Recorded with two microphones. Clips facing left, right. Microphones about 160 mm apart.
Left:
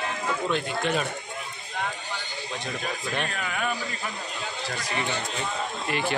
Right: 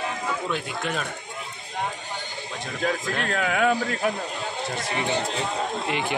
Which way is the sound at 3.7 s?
65° right (ahead or behind).